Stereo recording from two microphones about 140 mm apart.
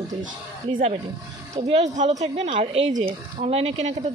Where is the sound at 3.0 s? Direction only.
50° right (ahead or behind).